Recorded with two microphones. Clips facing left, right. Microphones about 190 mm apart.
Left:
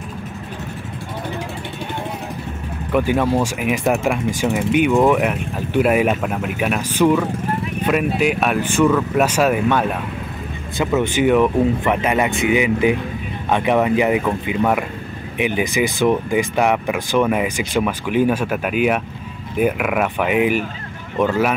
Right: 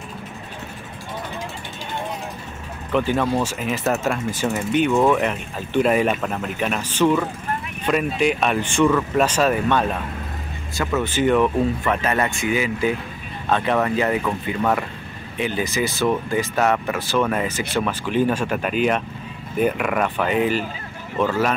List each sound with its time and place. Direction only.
2.9 s speech: 10° left (ahead or behind)